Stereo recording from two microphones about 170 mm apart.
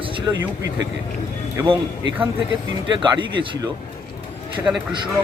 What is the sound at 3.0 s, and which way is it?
Speech, 30° right (ahead or behind).